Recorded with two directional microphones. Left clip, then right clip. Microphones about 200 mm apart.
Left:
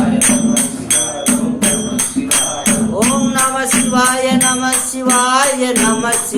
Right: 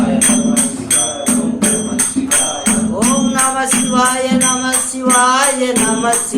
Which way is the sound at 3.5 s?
20° left (ahead or behind).